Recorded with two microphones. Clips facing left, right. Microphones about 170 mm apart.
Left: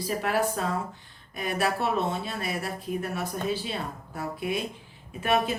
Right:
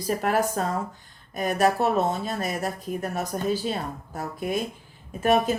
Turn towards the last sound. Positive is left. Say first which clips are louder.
# right 4 dB
turn(degrees=-45)  # may be behind; listen again after turning